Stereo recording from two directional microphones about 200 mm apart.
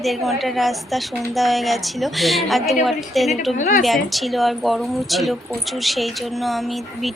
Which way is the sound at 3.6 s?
45° left (ahead or behind).